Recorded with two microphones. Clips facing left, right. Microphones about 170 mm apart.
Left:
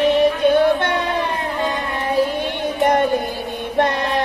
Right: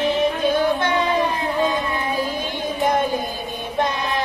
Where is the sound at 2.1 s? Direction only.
70° left (ahead or behind).